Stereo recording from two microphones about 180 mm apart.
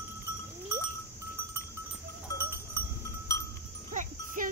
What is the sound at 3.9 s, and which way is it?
Music, 50° right (ahead or behind).